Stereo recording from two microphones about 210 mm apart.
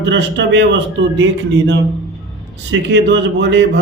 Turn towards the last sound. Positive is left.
turn(degrees=-55)  # may be behind; listen again after turning